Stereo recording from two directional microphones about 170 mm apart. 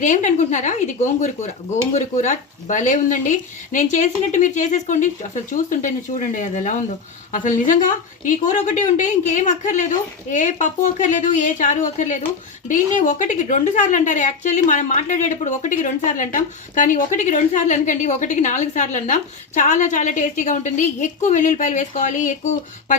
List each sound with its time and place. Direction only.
0.0 s speech: 45° left (ahead or behind)